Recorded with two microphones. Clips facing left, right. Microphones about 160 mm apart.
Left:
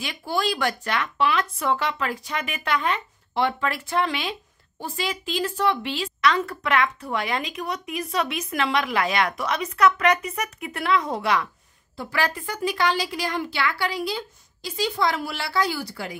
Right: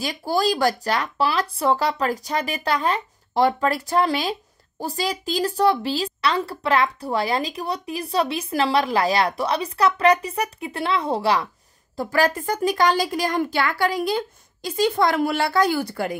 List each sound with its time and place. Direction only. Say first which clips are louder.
0.0 s speech: right 4 dB; 35° right (ahead or behind)
12.0 s a woman's voice: right 6 dB; 40° right (ahead or behind)